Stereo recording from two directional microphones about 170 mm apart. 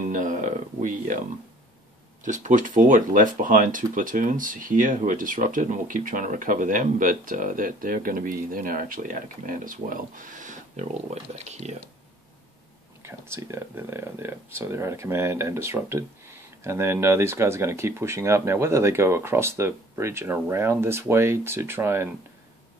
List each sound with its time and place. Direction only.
0.0 s a sound: 50° right (ahead or behind)
2.2 s speech: 50° right (ahead or behind)
13.0 s speech: 15° right (ahead or behind)